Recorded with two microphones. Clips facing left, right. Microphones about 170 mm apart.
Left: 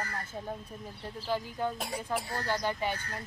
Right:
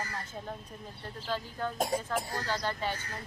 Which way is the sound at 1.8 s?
40° right (ahead or behind).